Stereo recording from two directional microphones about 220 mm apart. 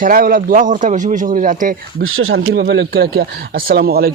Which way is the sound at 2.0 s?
65° right (ahead or behind).